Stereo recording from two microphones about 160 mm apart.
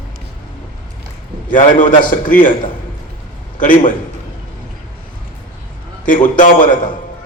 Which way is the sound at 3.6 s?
55° left (ahead or behind).